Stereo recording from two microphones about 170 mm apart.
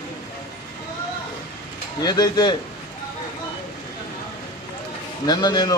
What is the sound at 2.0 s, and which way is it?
Speech, 25° left (ahead or behind).